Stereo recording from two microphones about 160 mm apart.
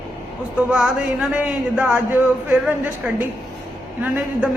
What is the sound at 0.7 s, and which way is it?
A man's voice, 5° right (ahead or behind).